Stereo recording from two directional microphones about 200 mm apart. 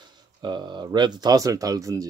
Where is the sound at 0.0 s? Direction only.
20° right (ahead or behind).